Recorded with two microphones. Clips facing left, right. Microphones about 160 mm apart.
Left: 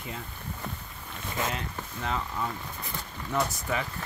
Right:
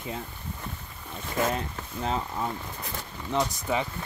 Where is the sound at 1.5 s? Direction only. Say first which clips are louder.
Right 4 dB; 35° right (ahead or behind).